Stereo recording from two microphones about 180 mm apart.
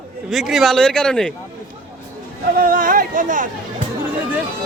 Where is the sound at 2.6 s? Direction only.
50° right (ahead or behind).